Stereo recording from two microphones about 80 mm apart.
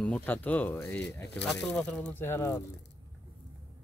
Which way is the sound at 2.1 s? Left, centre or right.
Left.